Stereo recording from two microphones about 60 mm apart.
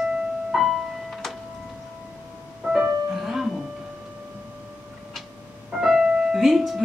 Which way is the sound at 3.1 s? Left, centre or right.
Centre.